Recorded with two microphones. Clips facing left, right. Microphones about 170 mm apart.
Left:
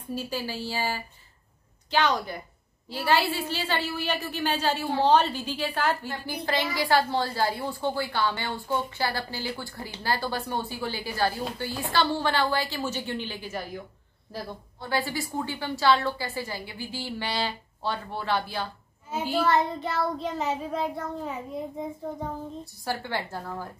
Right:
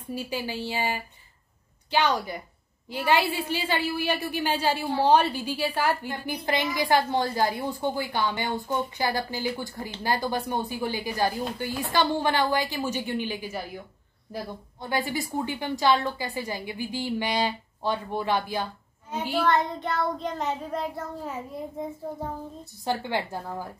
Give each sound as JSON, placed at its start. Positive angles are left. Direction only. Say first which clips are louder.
{"t": 0.1, "sound": "a woman's voice", "louder": "even", "side_deg": -10}
{"t": 19.0, "sound": "child singing", "louder": "even", "side_deg": 5}
{"t": 22.8, "sound": "a woman's voice", "louder": "right 3 dB", "side_deg": -15}